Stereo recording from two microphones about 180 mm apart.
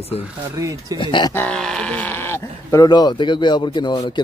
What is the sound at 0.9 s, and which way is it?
Speech, 25° left (ahead or behind).